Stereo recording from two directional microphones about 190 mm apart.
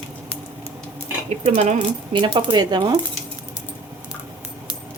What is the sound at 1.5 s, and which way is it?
Speech, 30° right (ahead or behind).